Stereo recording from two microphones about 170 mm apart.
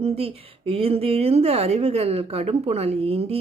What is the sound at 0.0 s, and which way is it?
A woman's voice, 35° right (ahead or behind).